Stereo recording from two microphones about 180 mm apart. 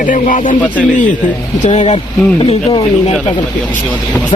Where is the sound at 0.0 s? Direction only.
45° left (ahead or behind).